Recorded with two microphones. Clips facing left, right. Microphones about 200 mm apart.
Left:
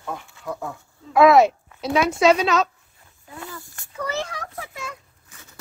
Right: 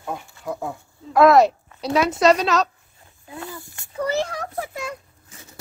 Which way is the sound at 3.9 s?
35° right (ahead or behind).